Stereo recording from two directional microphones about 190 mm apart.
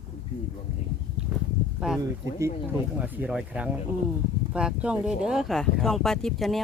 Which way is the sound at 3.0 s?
10° right (ahead or behind).